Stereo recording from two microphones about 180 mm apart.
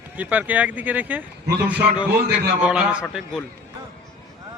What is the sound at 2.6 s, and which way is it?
Speech, 5° right (ahead or behind).